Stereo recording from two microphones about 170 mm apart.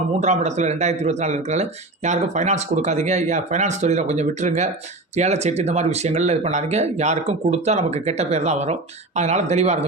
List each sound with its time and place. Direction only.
0.2 s speech: 40° right (ahead or behind)